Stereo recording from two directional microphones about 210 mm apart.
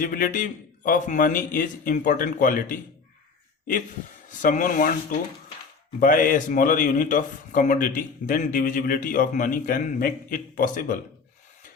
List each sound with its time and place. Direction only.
0.0 s speech: 40° left (ahead or behind)
4.3 s speech: 35° left (ahead or behind)
6.0 s speech: 40° left (ahead or behind)